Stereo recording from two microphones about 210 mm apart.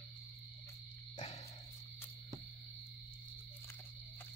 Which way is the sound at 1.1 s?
30° left (ahead or behind).